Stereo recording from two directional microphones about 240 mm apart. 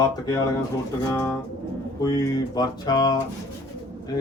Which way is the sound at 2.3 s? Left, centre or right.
Centre.